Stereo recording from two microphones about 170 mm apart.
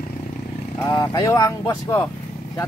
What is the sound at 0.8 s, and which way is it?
Speech, 20° left (ahead or behind).